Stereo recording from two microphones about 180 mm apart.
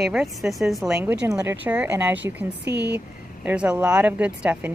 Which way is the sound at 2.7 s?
70° right (ahead or behind).